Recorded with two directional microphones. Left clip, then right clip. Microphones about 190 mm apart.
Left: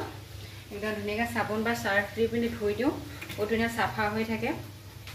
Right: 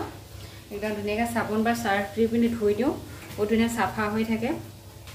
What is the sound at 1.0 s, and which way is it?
Speech, 10° right (ahead or behind).